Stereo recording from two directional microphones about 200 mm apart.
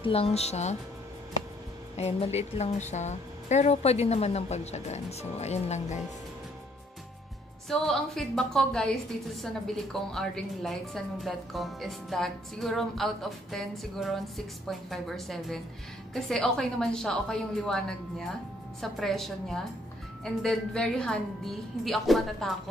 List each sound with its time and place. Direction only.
0.0 s speech: 30° left (ahead or behind)
2.0 s speech: 30° left (ahead or behind)
7.7 s speech: centre (ahead or behind)
9.9 s speech: centre (ahead or behind)